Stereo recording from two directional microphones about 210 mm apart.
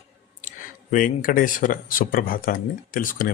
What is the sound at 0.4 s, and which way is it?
Speech, 40° left (ahead or behind).